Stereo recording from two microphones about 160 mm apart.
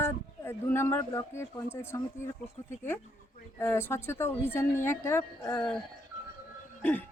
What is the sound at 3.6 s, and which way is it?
Speech, 15° left (ahead or behind).